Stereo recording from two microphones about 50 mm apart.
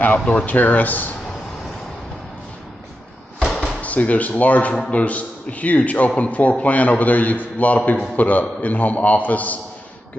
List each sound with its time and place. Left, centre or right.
0.5 s a man's voice: left
3.4 s door: centre
3.8 s a man's voice: left